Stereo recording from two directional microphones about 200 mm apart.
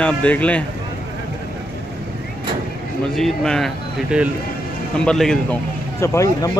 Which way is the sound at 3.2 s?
Centre (ahead or behind).